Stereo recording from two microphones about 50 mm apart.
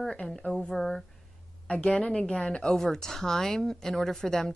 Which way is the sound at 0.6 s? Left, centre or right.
Centre.